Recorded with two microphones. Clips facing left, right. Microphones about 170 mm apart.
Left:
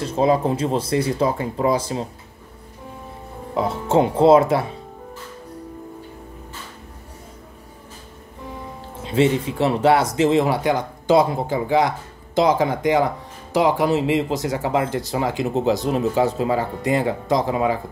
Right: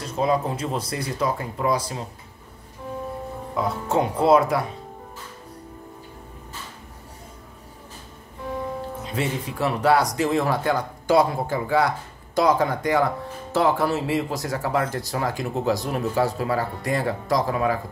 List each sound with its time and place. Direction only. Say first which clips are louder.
0.0 s speech: left 5 dB; 30° left (ahead or behind)
3.5 s speech: left 5 dB; 25° left (ahead or behind)
9.0 s speech: left 11 dB; 25° left (ahead or behind)